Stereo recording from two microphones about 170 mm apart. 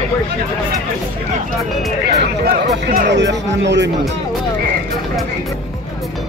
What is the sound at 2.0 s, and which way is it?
Speech, 60° right (ahead or behind).